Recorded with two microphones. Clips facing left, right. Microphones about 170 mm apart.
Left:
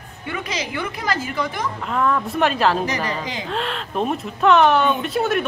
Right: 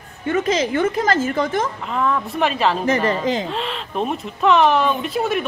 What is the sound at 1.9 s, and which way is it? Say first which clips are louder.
Speech: even; centre (ahead or behind).